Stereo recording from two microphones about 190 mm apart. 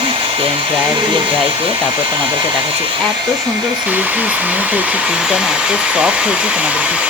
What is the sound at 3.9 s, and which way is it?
Speech, 10° right (ahead or behind).